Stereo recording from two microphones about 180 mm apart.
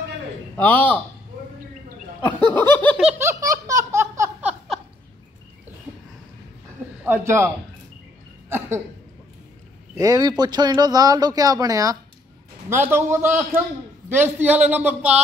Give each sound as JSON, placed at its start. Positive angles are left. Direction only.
{"t": 0.6, "sound": "speech", "side_deg": 10}
{"t": 2.2, "sound": "speech", "side_deg": 10}
{"t": 3.2, "sound": "laughter", "side_deg": -15}
{"t": 7.1, "sound": "a man's voice", "side_deg": -15}
{"t": 8.5, "sound": "cough", "side_deg": -15}
{"t": 9.9, "sound": "a man's voice", "side_deg": -20}